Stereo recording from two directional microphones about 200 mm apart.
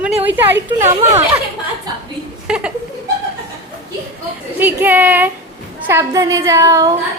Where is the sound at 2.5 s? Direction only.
5° right (ahead or behind).